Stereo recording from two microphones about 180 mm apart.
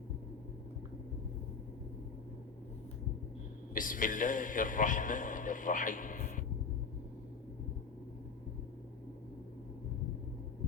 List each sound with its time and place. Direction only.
3.8 s a man's voice: 50° left (ahead or behind)